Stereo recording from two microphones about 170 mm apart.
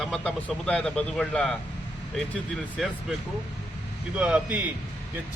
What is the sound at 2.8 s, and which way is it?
Speech, centre (ahead or behind).